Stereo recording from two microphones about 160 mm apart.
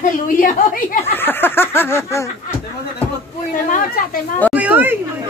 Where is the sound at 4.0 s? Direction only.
65° left (ahead or behind).